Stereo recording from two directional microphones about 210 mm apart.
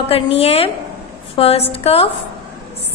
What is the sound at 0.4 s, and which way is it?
A woman's voice, 30° left (ahead or behind).